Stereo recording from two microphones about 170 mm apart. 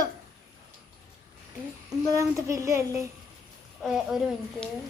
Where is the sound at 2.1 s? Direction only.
20° right (ahead or behind).